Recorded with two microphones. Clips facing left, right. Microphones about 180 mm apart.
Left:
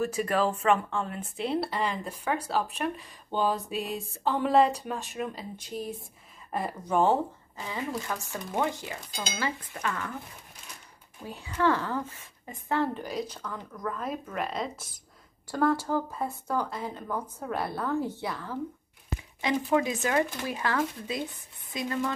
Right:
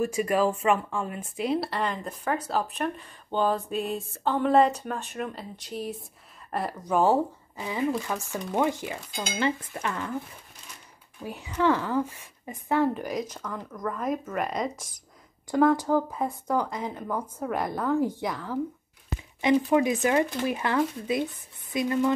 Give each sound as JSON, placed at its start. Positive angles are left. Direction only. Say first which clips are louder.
{"t": 0.0, "sound": "speech", "louder": "right 3 dB", "side_deg": -10}
{"t": 3.7, "sound": "a sound", "louder": "right 3 dB", "side_deg": -35}
{"t": 4.2, "sound": "speech", "louder": "right 2 dB", "side_deg": 5}
{"t": 8.3, "sound": "cutlery", "louder": "right 4 dB", "side_deg": -15}
{"t": 11.2, "sound": "speech", "louder": "right 2 dB", "side_deg": -15}
{"t": 15.5, "sound": "speech", "louder": "right 5 dB", "side_deg": -15}
{"t": 19.4, "sound": "cutlery", "louder": "right 5 dB", "side_deg": -20}